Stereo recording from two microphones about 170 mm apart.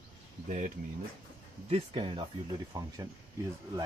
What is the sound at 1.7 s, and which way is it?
Speech, 30° right (ahead or behind).